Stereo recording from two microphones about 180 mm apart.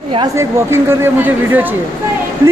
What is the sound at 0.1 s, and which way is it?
Speech, 20° right (ahead or behind).